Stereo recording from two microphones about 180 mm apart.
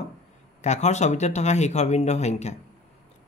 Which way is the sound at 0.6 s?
40° left (ahead or behind).